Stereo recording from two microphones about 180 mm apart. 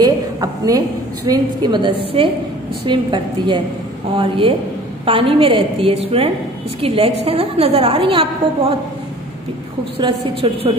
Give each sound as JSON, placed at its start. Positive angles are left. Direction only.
{"t": 0.0, "sound": "a woman's voice", "side_deg": -20}
{"t": 7.2, "sound": "a woman's voice", "side_deg": -35}
{"t": 9.9, "sound": "a woman's voice", "side_deg": -30}